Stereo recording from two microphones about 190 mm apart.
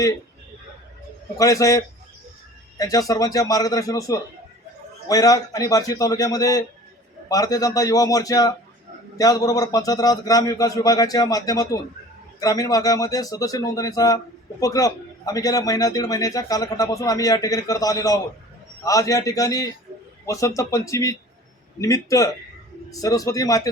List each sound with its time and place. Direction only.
1.4 s a man's voice: 15° left (ahead or behind)